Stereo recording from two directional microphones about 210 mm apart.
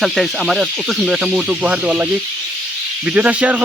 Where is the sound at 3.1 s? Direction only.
5° right (ahead or behind).